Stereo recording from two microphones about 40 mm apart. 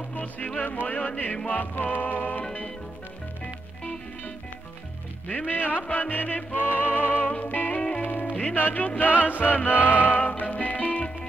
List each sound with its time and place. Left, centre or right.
0.8 s music: left
5.5 s music: left